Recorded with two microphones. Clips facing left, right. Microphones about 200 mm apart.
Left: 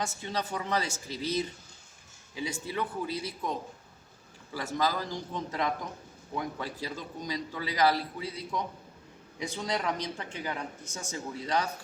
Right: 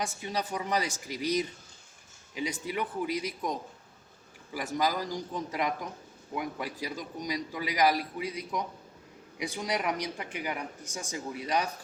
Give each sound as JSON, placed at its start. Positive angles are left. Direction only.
{"t": 0.0, "sound": "speech", "side_deg": -10}